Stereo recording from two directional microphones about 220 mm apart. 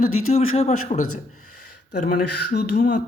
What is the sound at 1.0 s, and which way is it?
Speech, 75° left (ahead or behind).